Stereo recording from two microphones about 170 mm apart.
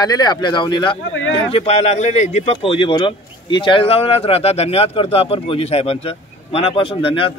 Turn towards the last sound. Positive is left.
turn(degrees=30)  # may be behind; listen again after turning